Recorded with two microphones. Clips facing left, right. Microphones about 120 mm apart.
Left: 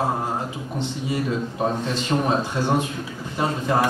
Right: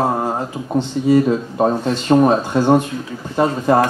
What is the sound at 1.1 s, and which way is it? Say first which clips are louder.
Speech: right 12 dB; 45° right (ahead or behind).